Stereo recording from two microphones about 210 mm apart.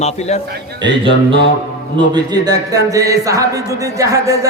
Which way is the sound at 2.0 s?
20° right (ahead or behind).